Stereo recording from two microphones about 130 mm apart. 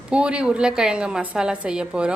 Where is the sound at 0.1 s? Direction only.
10° right (ahead or behind).